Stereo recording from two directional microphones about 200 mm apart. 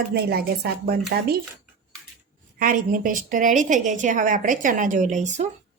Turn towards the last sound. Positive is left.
turn(degrees=-35)  # may be behind; listen again after turning